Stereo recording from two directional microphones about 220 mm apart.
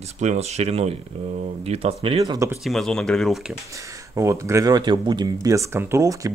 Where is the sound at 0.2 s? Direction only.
30° right (ahead or behind); by 2.6 s 15° right (ahead or behind).